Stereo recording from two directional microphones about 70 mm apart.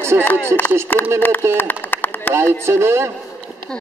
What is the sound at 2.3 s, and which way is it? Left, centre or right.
Speech, right.